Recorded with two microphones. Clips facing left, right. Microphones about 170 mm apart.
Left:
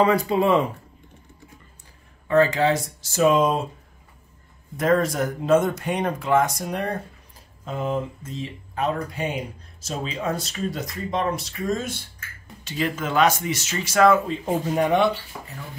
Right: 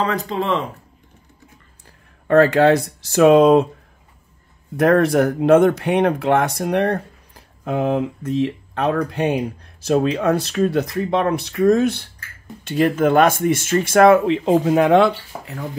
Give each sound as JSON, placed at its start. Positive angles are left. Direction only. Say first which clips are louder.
{"t": 0.0, "sound": "speech", "louder": "left 3 dB", "side_deg": 10}
{"t": 2.2, "sound": "speech", "louder": "right 6 dB", "side_deg": -60}
{"t": 4.7, "sound": "speech", "louder": "right 6 dB", "side_deg": -65}